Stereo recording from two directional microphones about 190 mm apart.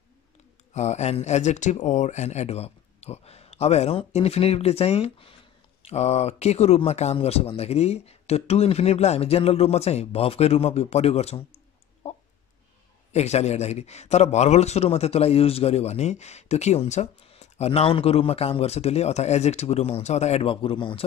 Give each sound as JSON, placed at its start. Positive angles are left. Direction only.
{"t": 0.7, "sound": "a man's voice", "side_deg": 35}
{"t": 13.1, "sound": "a man's voice", "side_deg": 35}